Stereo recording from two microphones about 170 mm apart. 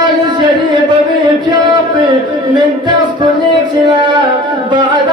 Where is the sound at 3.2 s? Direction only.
25° right (ahead or behind).